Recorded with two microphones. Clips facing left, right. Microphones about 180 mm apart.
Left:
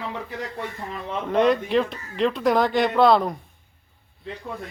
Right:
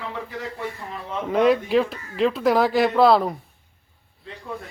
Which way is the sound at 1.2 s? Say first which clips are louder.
Right 1 dB; 5° right (ahead or behind).